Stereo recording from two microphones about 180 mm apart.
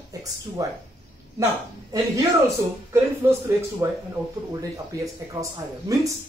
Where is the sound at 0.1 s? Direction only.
20° right (ahead or behind).